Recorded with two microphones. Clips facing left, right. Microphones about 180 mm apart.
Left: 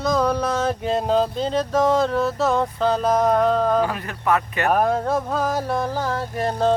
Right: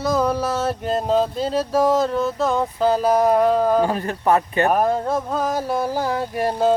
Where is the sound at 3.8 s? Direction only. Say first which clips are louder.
Right 3 dB; 30° right (ahead or behind).